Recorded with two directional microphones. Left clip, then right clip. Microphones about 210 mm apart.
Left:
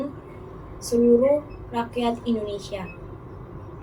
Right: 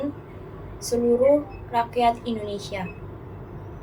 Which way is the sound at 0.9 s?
25° right (ahead or behind).